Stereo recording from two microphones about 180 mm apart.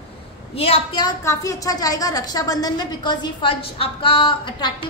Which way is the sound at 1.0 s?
15° left (ahead or behind).